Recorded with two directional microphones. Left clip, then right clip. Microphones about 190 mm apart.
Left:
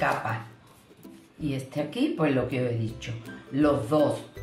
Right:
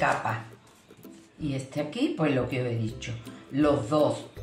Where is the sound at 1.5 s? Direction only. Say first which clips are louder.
Left 1 dB; 15° left (ahead or behind).